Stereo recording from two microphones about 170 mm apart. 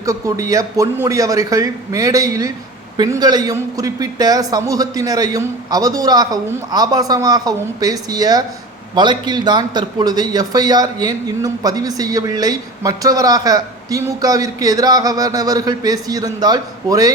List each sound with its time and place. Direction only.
0.0 s a man's voice: 20° right (ahead or behind)